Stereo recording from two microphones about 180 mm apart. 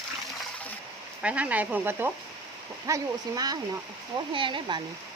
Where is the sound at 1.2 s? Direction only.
5° right (ahead or behind); by 4.8 s 25° right (ahead or behind).